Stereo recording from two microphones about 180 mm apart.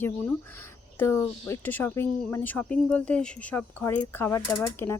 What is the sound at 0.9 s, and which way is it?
Speech, 15° left (ahead or behind).